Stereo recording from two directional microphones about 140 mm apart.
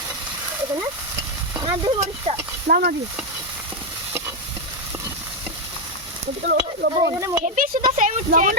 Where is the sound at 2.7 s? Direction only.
90° right.